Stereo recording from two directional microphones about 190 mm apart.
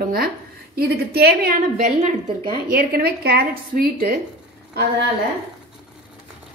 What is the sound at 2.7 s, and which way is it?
A woman's voice, 55° right (ahead or behind).